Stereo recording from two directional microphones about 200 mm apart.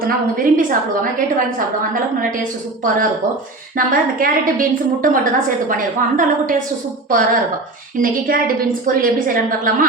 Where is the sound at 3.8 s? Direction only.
45° right (ahead or behind).